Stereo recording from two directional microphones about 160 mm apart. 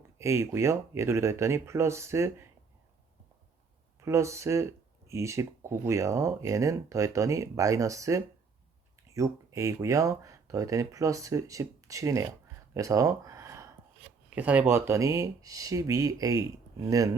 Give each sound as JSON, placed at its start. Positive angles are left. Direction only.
{"t": 0.2, "sound": "speech", "side_deg": -15}
{"t": 4.0, "sound": "speech", "side_deg": -20}
{"t": 12.7, "sound": "a sound", "side_deg": -20}
{"t": 14.3, "sound": "speech", "side_deg": -10}